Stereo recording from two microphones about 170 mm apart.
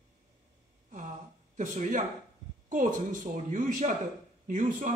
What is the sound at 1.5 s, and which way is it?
Speech, 50° right (ahead or behind).